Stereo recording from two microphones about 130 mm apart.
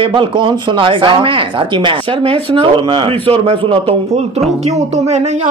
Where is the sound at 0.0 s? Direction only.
40° right (ahead or behind).